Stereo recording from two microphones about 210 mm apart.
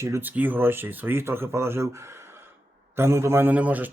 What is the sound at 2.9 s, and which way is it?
Speech, 10° right (ahead or behind).